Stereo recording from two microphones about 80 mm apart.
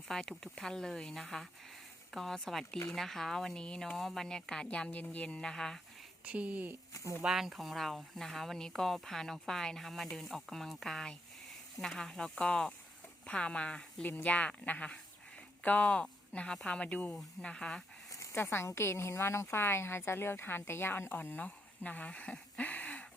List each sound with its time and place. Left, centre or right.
0.1 s speech: centre
6.2 s speech: centre
7.3 s speech: centre
18.1 s a sound: left
18.4 s a woman's voice: left